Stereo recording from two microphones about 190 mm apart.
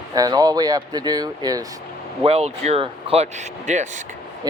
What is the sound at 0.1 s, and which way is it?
Speech, 20° right (ahead or behind).